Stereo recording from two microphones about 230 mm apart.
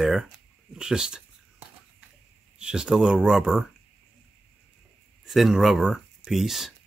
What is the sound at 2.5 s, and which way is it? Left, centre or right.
Speech, centre.